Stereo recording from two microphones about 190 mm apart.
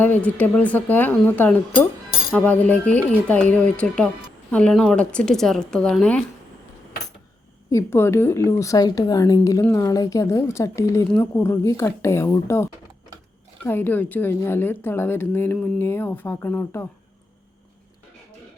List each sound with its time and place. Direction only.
0.0 s a woman's voice: 10° left (ahead or behind)
7.7 s a woman's voice: 15° left (ahead or behind)
13.7 s a woman's voice: 10° left (ahead or behind)